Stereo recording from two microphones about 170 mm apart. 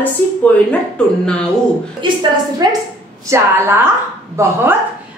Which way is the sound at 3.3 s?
15° right (ahead or behind).